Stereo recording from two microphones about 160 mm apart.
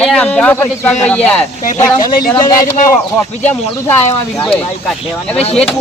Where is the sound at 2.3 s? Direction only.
25° left (ahead or behind).